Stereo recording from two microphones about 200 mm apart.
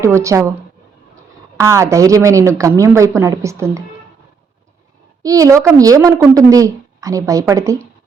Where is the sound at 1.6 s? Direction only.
15° right (ahead or behind).